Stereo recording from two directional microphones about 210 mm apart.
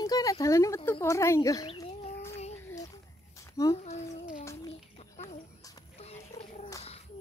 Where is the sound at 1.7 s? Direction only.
25° left (ahead or behind).